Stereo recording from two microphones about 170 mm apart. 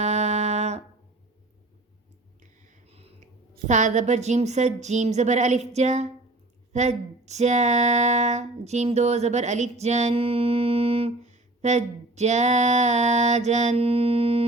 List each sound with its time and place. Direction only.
0.0 s music: 40° right (ahead or behind)
2.4 s a sound: 40° right (ahead or behind)
3.7 s a woman's voice: 45° right (ahead or behind)